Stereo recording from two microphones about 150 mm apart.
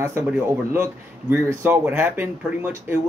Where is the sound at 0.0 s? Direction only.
20° right (ahead or behind).